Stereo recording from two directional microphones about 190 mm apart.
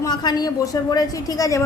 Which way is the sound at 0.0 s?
20° left (ahead or behind).